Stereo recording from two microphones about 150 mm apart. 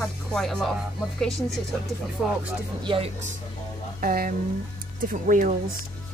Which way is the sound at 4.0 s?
80° right.